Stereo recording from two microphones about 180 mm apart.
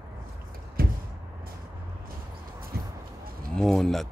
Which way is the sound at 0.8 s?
55° right (ahead or behind).